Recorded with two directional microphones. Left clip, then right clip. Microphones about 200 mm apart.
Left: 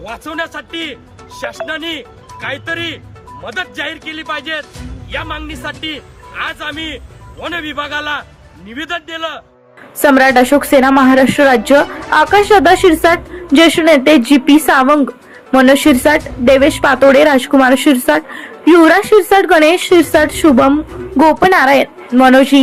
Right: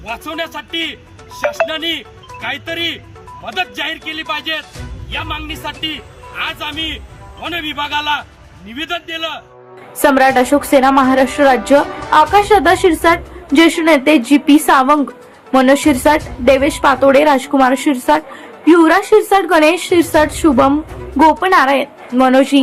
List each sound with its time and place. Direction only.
0.1 s a woman's voice: 15° left (ahead or behind)